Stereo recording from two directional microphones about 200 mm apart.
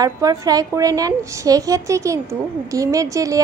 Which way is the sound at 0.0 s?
15° right (ahead or behind).